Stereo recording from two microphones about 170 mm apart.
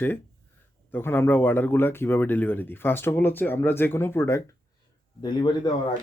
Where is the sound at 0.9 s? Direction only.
15° left (ahead or behind).